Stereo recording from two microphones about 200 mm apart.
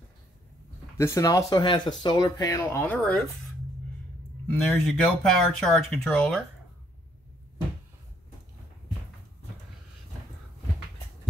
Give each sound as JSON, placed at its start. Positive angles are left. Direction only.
{"t": 0.9, "sound": "speech", "side_deg": 15}
{"t": 4.5, "sound": "speech", "side_deg": 5}